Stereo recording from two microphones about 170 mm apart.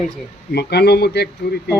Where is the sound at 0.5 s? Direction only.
75° left (ahead or behind).